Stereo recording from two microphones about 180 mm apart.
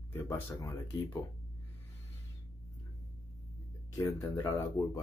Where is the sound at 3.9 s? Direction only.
20° left (ahead or behind).